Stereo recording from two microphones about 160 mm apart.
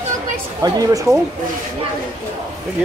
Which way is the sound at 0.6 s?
20° right (ahead or behind).